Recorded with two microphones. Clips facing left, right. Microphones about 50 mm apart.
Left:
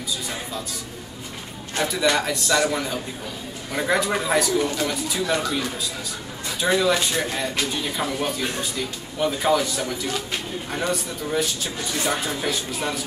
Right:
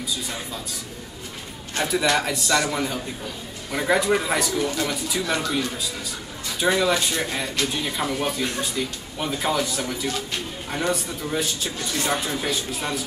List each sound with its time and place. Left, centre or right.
1.8 s speech: centre
6.6 s speech: centre